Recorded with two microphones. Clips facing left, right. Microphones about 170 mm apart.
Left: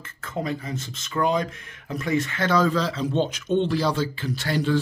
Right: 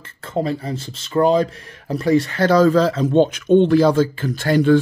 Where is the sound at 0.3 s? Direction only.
30° right (ahead or behind).